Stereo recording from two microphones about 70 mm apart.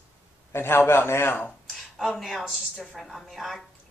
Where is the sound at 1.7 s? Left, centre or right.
Centre.